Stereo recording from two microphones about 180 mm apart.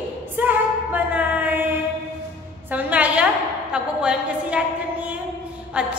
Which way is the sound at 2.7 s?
10° right (ahead or behind).